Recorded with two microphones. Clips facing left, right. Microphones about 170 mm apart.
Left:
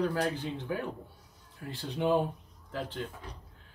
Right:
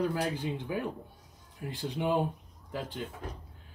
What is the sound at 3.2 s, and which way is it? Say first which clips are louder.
Speech: right 5 dB; 45° right (ahead or behind).